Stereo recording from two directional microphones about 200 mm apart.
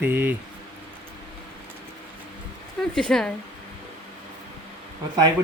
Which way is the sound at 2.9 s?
5° left (ahead or behind).